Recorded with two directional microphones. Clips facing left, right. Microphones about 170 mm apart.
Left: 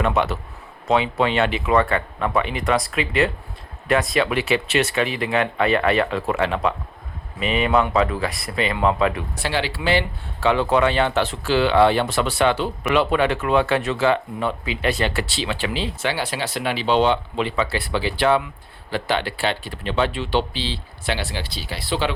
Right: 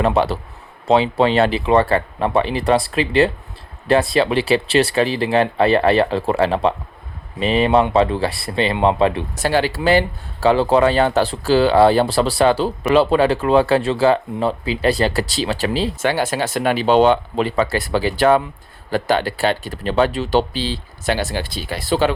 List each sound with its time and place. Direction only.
0.0 s speech: 35° right (ahead or behind)
9.3 s speech: 45° right (ahead or behind)